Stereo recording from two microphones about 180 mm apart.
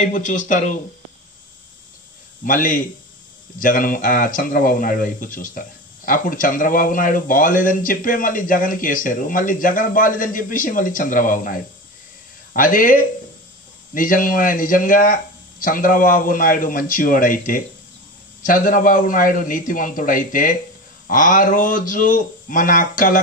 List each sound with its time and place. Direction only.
0.0 s speech: 45° left (ahead or behind)
2.4 s speech: 50° left (ahead or behind)
18.4 s speech: 50° left (ahead or behind)